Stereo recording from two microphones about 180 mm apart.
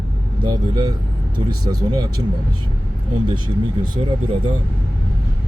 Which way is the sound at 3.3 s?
25° right (ahead or behind).